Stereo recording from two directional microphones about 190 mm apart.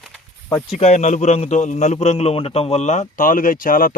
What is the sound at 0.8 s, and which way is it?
A man's voice, 35° left (ahead or behind).